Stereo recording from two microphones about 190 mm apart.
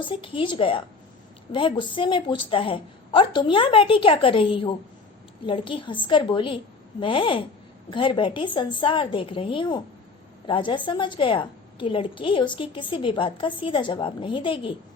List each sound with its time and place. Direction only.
0.0 s a woman's voice: 25° left (ahead or behind)